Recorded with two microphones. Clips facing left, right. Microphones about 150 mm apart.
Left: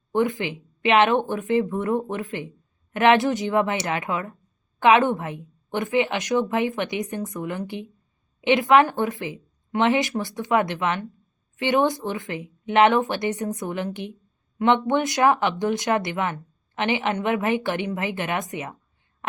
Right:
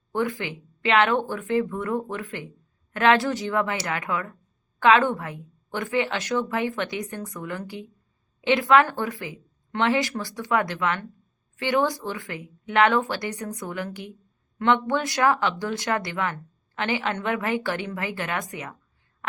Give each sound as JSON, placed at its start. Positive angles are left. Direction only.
{"t": 0.1, "sound": "speech", "side_deg": 20}